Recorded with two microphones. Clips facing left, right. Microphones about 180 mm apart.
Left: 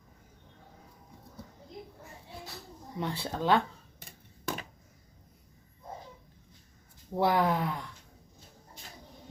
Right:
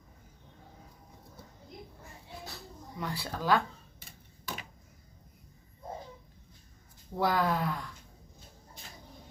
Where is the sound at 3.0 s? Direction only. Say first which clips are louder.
Left 3 dB; 25° left (ahead or behind).